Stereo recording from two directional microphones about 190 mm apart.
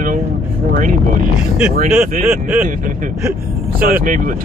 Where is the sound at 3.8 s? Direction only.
50° right (ahead or behind).